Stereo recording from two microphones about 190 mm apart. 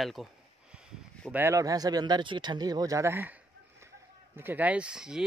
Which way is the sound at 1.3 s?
15° right (ahead or behind).